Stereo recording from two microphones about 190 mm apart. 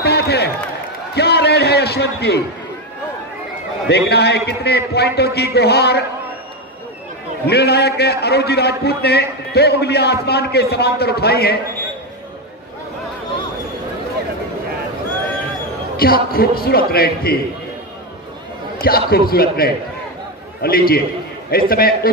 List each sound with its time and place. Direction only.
0.0 s a sound: 55° left (ahead or behind)
1.1 s a man's voice: 60° left (ahead or behind)
3.9 s a man's voice: 60° left (ahead or behind)
7.4 s a man's voice: 55° left (ahead or behind)
16.0 s a man's voice: 50° left (ahead or behind)
18.8 s a man's voice: 50° left (ahead or behind)